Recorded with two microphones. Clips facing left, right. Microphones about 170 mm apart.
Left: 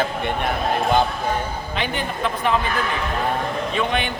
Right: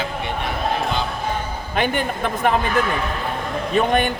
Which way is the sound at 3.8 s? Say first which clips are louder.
Right 6 dB; 45° right (ahead or behind).